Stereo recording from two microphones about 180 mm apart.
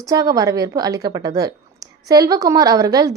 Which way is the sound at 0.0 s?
20° right (ahead or behind).